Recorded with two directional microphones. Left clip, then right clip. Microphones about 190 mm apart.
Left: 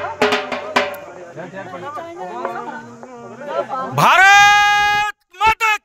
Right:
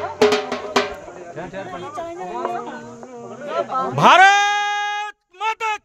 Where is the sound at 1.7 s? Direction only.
40° right (ahead or behind).